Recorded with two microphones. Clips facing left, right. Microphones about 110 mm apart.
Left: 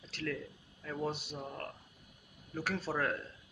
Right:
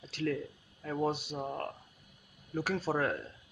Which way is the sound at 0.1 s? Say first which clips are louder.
Right 5 dB; 20° right (ahead or behind).